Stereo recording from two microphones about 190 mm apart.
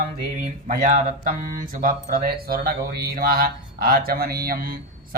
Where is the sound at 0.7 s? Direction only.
45° right (ahead or behind).